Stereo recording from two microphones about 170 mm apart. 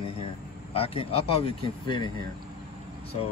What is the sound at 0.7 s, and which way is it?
Speech, 35° left (ahead or behind).